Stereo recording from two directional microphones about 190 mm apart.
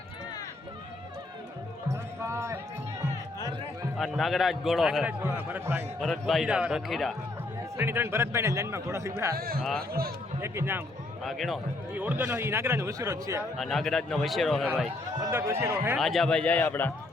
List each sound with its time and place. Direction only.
2.2 s a sound: 15° right (ahead or behind)
3.9 s a man's voice: centre (ahead or behind)
6.0 s a man's voice: centre (ahead or behind)
7.8 s a man's voice: 10° right (ahead or behind)
9.3 s a man's voice: 50° right (ahead or behind)
9.6 s a man's voice: centre (ahead or behind)
10.4 s a man's voice: 15° right (ahead or behind)
11.2 s a man's voice: centre (ahead or behind); by 13.4 s 15° right (ahead or behind)
13.6 s a man's voice: centre (ahead or behind)
15.2 s a man's voice: 15° right (ahead or behind)
16.0 s a man's voice: centre (ahead or behind)